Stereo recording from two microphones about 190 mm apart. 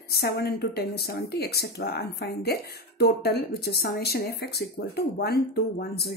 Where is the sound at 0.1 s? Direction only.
55° left (ahead or behind).